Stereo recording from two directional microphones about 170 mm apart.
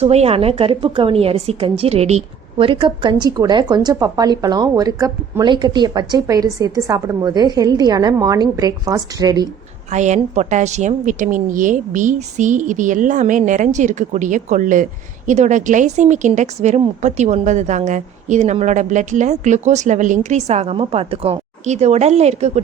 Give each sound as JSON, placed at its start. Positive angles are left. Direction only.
{"t": 0.0, "sound": "a woman's voice", "side_deg": -40}
{"t": 9.9, "sound": "a woman's voice", "side_deg": -45}